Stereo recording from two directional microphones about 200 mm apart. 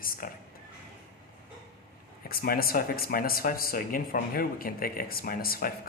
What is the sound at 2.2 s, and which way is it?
Speech, 50° left (ahead or behind).